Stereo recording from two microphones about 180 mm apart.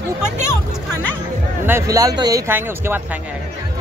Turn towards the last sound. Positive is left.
turn(degrees=-10)  # may be behind; listen again after turning